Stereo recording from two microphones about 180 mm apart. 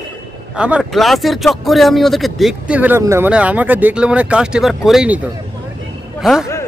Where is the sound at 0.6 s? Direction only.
5° right (ahead or behind).